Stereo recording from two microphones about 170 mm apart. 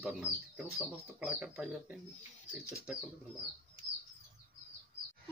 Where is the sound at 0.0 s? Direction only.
10° right (ahead or behind).